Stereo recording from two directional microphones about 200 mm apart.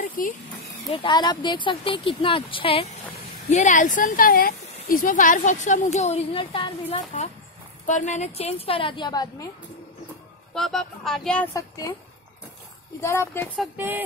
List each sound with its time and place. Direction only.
0.2 s speech: 45° left (ahead or behind)
0.9 s speech: 20° left (ahead or behind)
10.5 s speech: centre (ahead or behind)
13.0 s speech: 10° left (ahead or behind)
13.7 s speech: 10° right (ahead or behind)